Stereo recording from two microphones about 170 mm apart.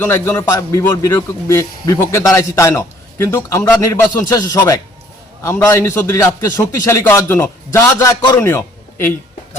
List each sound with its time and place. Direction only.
0.0 s a man's voice: 15° left (ahead or behind)